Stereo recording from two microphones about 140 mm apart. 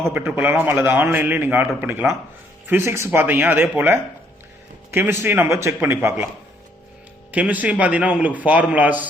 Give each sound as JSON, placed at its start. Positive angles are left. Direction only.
{"t": 0.0, "sound": "a man's voice", "side_deg": -15}
{"t": 7.3, "sound": "a man's voice", "side_deg": -10}